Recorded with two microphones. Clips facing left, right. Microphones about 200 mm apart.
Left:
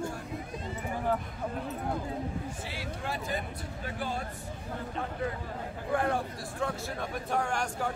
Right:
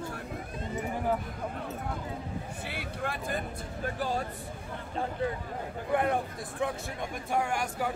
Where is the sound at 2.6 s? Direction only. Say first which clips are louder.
Right 1 dB; 55° right (ahead or behind).